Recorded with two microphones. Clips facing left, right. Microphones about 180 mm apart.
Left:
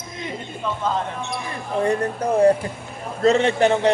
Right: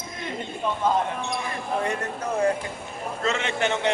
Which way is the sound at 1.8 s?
35° left (ahead or behind).